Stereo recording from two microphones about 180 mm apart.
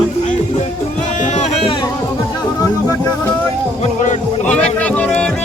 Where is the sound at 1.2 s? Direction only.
40° left (ahead or behind).